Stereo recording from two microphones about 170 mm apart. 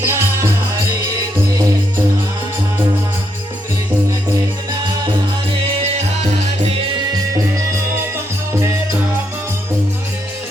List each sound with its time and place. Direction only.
0.0 s music: 15° right (ahead or behind)